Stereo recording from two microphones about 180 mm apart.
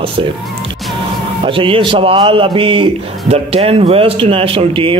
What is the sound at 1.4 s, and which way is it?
A man's voice, 30° right (ahead or behind).